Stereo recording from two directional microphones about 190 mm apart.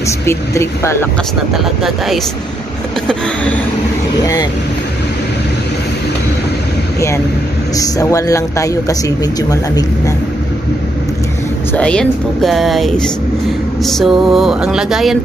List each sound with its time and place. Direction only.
0.2 s a man's voice: 15° left (ahead or behind)
3.1 s a sound: 5° left (ahead or behind)
4.2 s speech: 20° left (ahead or behind)
7.7 s a man's voice: 20° left (ahead or behind)
11.7 s speech: 5° left (ahead or behind)